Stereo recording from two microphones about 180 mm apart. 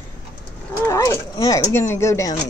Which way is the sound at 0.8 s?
15° left (ahead or behind).